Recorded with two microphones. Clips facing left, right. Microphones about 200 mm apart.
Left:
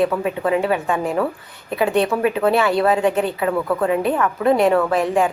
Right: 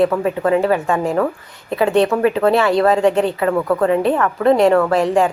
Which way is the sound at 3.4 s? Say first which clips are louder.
Right 3 dB; 5° left (ahead or behind).